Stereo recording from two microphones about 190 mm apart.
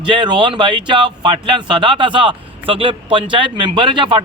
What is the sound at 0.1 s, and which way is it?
Speech, 25° right (ahead or behind).